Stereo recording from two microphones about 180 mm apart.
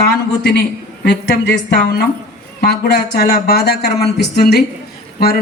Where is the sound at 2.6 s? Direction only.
60° left (ahead or behind).